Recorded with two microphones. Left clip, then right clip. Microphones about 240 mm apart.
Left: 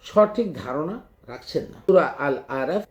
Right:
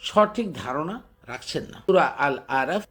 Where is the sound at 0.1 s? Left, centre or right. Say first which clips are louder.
Left 2 dB; centre.